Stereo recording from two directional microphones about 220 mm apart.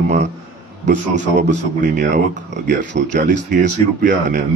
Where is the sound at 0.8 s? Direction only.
35° right (ahead or behind).